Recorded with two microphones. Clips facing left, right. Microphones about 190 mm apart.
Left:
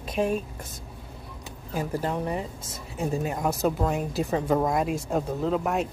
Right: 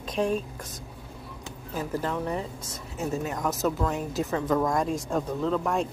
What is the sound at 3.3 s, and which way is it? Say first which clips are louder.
Speech: left 2 dB; 25° left (ahead or behind).